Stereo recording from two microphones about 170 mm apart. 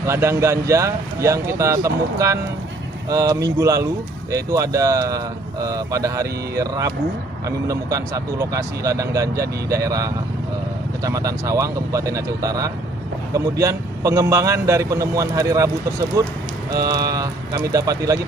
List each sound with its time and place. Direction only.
0.0 s a man's voice: 15° right (ahead or behind)